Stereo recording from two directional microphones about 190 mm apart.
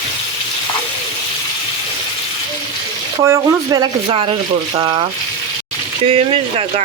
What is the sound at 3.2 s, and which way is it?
Speech, 15° right (ahead or behind).